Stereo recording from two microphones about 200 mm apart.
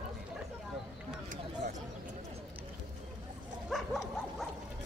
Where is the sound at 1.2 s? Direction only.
40° right (ahead or behind).